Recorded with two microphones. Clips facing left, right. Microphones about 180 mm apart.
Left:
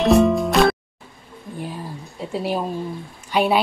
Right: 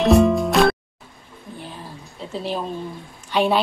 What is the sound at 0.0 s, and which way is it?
Music, centre (ahead or behind).